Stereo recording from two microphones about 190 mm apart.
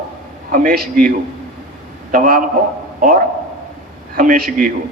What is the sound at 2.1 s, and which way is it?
Speech, 45° right (ahead or behind).